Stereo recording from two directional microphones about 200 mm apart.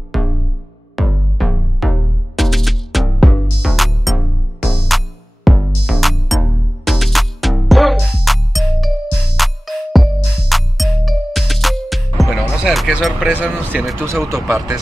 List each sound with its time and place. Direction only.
0.1 s music: centre (ahead or behind)